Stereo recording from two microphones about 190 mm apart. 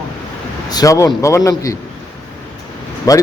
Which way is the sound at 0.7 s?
20° left (ahead or behind).